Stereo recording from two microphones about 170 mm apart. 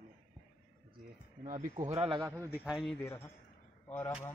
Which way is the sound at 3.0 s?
15° left (ahead or behind).